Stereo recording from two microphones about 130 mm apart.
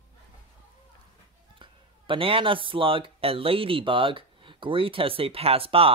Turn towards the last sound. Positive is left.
turn(degrees=-45)  # may be behind; listen again after turning